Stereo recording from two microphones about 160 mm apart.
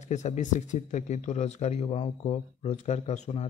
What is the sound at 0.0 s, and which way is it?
A man's voice, 45° left (ahead or behind).